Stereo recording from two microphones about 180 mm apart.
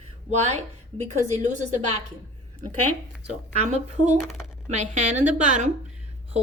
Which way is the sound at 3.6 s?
40° right (ahead or behind).